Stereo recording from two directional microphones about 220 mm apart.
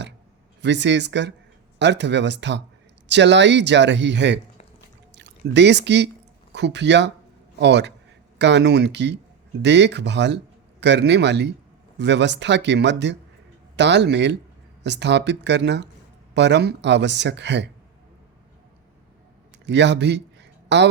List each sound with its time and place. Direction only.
0.6 s speech: 55° right (ahead or behind)
19.6 s a man's voice: 55° right (ahead or behind)